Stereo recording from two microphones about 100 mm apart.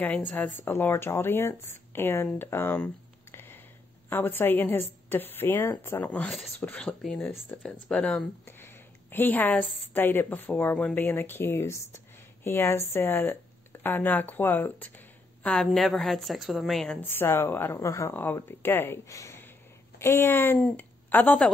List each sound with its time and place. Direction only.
0.0 s speech: 15° left (ahead or behind)
2.3 s a sound: 20° left (ahead or behind)
4.1 s speech: 20° left (ahead or behind)
8.5 s a sound: 20° left (ahead or behind)
9.9 s speech: 20° left (ahead or behind)
15.5 s a woman's voice: 5° left (ahead or behind)
17.0 s a woman's voice: 20° left (ahead or behind)